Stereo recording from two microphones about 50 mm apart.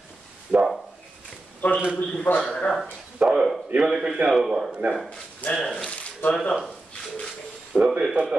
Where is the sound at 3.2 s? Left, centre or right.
Right.